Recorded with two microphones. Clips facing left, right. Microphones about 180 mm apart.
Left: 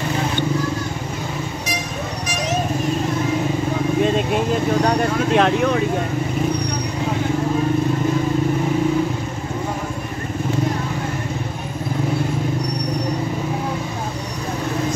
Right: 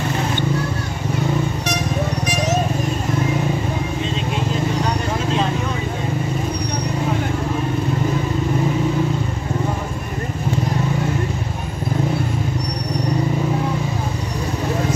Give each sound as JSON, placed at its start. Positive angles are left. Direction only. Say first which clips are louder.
{"t": 4.8, "sound": "vehicle", "louder": "left 4 dB", "side_deg": 65}